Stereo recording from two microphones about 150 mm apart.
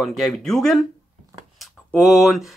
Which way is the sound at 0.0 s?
Centre (ahead or behind).